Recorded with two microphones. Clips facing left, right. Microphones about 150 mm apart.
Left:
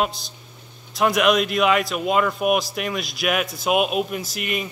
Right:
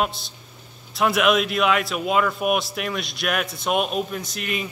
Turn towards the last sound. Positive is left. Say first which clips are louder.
# left 2 dB
turn(degrees=5)  # may be behind; listen again after turning